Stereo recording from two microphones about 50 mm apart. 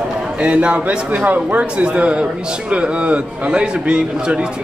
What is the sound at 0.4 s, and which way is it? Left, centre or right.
Speech, right.